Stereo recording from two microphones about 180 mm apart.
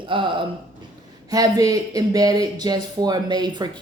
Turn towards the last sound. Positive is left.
turn(degrees=-25)  # may be behind; listen again after turning